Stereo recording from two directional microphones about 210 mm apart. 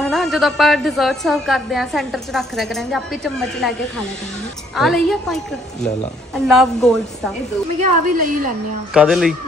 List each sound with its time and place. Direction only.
0.0 s a woman's voice: centre (ahead or behind)
4.7 s a woman's voice: centre (ahead or behind)
7.8 s a woman's voice: 40° right (ahead or behind)
8.9 s a woman's voice: 5° right (ahead or behind)